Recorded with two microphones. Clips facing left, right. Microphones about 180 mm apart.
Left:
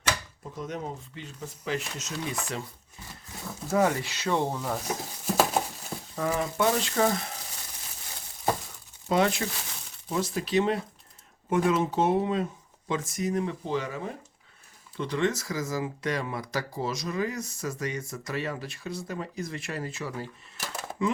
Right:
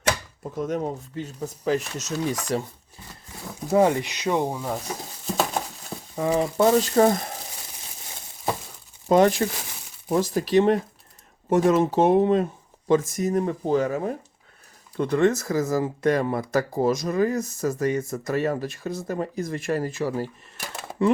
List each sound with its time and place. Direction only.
0.6 s speech: 45° right (ahead or behind)
3.4 s speech: 25° right (ahead or behind)
4.9 s patter: 5° left (ahead or behind)
6.1 s speech: 20° right (ahead or behind)
6.6 s speech: 35° right (ahead or behind)
9.0 s speech: 45° right (ahead or behind)